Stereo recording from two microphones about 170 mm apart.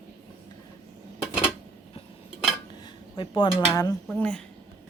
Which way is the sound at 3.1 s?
30° left (ahead or behind).